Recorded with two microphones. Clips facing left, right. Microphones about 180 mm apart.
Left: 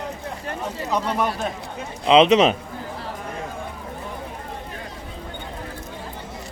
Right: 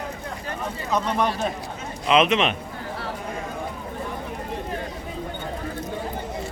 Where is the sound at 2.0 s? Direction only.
30° left (ahead or behind).